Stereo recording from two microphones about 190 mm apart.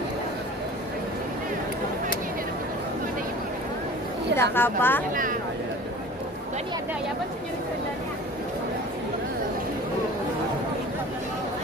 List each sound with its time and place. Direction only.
4.4 s a woman's voice: 10° left (ahead or behind)
5.1 s speech: 45° right (ahead or behind)